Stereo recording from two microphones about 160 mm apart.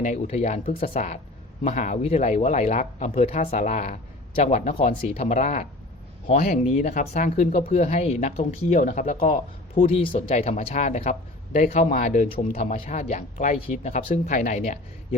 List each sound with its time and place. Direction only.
0.0 s speech: 45° left (ahead or behind)
9.8 s speech: 35° left (ahead or behind)
11.9 s speech: 55° left (ahead or behind)